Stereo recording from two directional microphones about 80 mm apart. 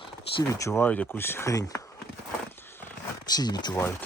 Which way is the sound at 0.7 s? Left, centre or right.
Left.